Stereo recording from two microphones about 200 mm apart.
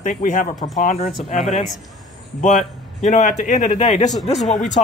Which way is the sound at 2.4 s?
35° left (ahead or behind).